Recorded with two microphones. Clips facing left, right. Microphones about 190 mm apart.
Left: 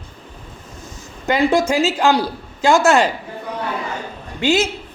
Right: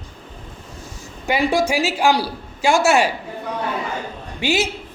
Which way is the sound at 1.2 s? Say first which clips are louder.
Left 3 dB; 15° right (ahead or behind).